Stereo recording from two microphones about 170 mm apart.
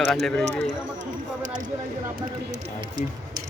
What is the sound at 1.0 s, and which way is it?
Speech, 50° right (ahead or behind).